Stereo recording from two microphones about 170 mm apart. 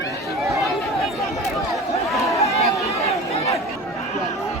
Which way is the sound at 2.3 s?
20° left (ahead or behind).